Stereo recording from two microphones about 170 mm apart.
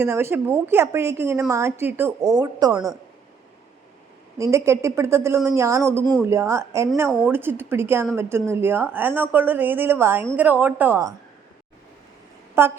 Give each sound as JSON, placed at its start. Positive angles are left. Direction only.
{"t": 0.0, "sound": "a woman's voice", "side_deg": -15}
{"t": 4.4, "sound": "a woman's voice", "side_deg": -15}
{"t": 12.6, "sound": "a woman's voice", "side_deg": -15}